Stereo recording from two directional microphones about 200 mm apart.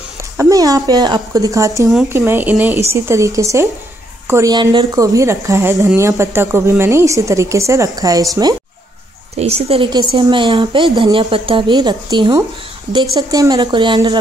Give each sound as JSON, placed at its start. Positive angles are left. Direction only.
{"t": 0.4, "sound": "speech", "side_deg": -15}
{"t": 9.4, "sound": "a woman's voice", "side_deg": -30}